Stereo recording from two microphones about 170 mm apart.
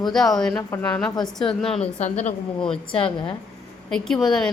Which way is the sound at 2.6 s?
30° left (ahead or behind).